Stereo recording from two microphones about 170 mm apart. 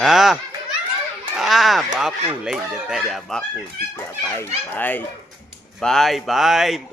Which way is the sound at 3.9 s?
15° left (ahead or behind).